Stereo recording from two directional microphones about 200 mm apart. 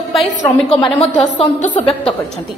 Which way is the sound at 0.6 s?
25° left (ahead or behind).